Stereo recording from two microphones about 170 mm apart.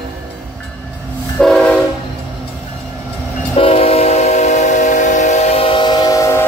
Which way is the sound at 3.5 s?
35° left (ahead or behind).